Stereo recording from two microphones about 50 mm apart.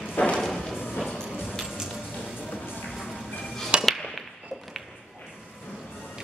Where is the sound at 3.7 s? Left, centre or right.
Centre.